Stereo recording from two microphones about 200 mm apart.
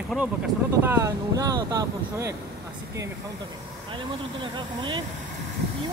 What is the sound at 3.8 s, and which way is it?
Speech, 25° right (ahead or behind).